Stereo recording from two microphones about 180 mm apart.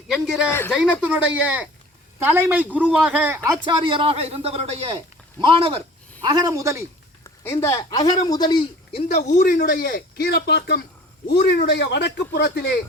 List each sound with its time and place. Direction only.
0.1 s speech: centre (ahead or behind)
3.7 s a man's voice: 25° right (ahead or behind)
7.3 s speech: 15° left (ahead or behind)
9.0 s a man's voice: 45° left (ahead or behind); by 12.8 s 60° left (ahead or behind)